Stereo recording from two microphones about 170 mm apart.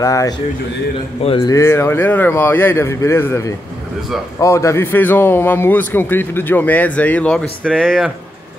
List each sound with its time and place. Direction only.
0.0 s a man's voice: 20° left (ahead or behind); by 8.0 s 5° left (ahead or behind)